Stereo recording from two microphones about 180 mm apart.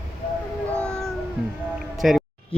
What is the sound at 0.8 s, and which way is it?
Cat, 5° left (ahead or behind).